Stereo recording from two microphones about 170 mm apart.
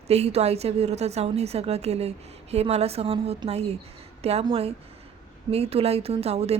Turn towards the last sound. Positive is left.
turn(degrees=-35)  # may be behind; listen again after turning